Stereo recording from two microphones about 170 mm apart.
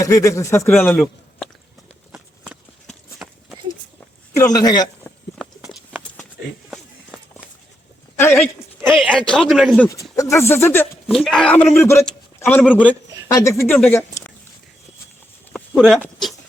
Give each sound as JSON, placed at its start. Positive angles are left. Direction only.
{"t": 0.0, "sound": "a man's voice", "side_deg": 20}
{"t": 2.1, "sound": "clip-clop", "side_deg": -5}
{"t": 4.4, "sound": "a man's voice", "side_deg": 20}
{"t": 5.4, "sound": "a sound", "side_deg": -5}
{"t": 7.1, "sound": "run", "side_deg": 0}
{"t": 8.2, "sound": "a man's voice", "side_deg": 10}
{"t": 9.9, "sound": "a man's voice", "side_deg": 20}
{"t": 11.1, "sound": "a man's voice", "side_deg": 0}
{"t": 13.9, "sound": "a sound", "side_deg": 15}